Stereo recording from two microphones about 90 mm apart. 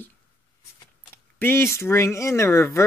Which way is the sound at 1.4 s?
25° left (ahead or behind).